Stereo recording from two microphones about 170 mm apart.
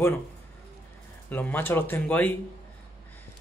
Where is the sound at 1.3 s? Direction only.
10° left (ahead or behind).